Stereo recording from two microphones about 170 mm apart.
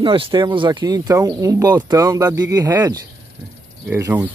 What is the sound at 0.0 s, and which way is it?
Speech, 30° right (ahead or behind).